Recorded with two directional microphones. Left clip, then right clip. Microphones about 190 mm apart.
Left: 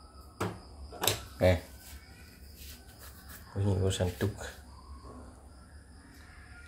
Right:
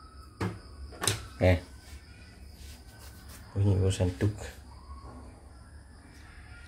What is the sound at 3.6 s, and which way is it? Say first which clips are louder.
Speech: right 1 dB; 5° right (ahead or behind).